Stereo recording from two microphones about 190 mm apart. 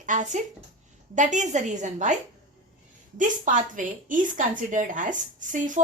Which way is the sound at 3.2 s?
45° right (ahead or behind).